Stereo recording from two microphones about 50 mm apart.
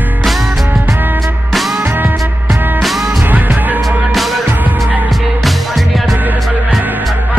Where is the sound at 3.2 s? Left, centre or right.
Right.